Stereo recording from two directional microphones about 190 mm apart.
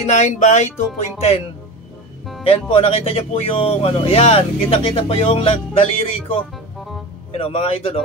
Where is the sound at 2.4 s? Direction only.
30° left (ahead or behind).